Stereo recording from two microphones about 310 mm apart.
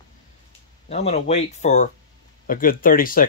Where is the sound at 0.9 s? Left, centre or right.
Left.